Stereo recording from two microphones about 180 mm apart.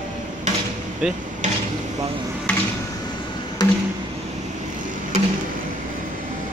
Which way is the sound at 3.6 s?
25° left (ahead or behind).